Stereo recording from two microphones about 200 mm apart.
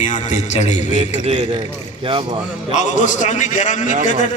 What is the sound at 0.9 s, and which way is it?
A man's voice, 25° right (ahead or behind).